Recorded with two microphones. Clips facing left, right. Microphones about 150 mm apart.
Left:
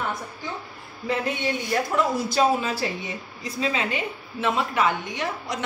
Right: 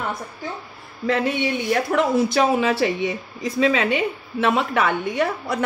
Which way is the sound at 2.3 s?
75° right (ahead or behind).